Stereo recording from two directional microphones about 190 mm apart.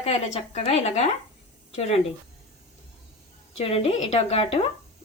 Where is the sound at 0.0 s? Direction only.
35° left (ahead or behind).